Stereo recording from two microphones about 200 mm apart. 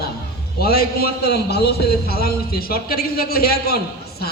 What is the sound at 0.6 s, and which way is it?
Speech, 50° left (ahead or behind).